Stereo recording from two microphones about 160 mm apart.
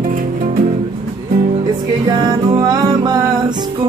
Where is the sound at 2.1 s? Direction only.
25° right (ahead or behind).